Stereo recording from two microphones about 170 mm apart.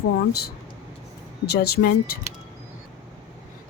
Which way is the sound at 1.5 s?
70° left (ahead or behind).